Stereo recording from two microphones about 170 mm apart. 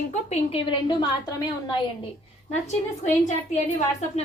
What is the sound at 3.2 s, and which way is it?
Speech, 45° left (ahead or behind).